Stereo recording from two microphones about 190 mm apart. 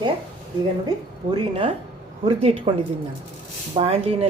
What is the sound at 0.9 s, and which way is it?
Speech, 20° right (ahead or behind).